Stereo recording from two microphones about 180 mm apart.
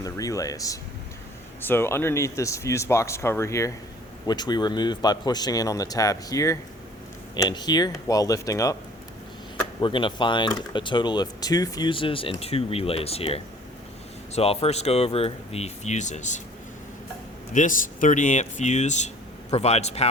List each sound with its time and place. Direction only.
0.0 s speech: 20° left (ahead or behind); by 16.4 s 40° left (ahead or behind)
17.5 s speech: 45° left (ahead or behind)